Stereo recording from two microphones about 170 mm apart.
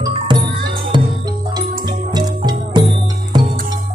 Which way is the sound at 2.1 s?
25° right (ahead or behind).